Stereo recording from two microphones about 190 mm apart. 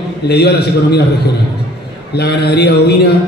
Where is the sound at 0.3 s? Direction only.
60° left (ahead or behind).